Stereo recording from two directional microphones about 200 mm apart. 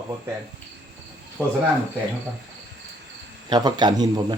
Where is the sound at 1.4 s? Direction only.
10° left (ahead or behind).